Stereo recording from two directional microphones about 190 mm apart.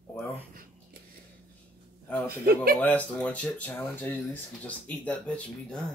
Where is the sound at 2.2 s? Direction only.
50° right (ahead or behind).